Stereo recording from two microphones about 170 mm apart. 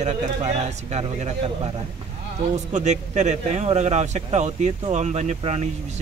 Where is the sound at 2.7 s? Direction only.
45° right (ahead or behind).